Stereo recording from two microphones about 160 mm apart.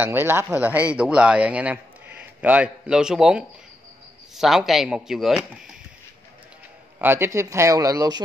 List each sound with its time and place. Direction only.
0.0 s a man's voice: 15° right (ahead or behind)
7.0 s speech: 15° right (ahead or behind)